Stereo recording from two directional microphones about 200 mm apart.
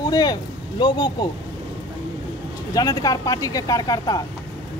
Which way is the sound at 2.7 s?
20° left (ahead or behind).